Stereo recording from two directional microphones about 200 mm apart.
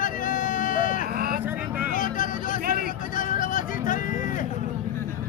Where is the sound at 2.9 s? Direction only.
40° left (ahead or behind).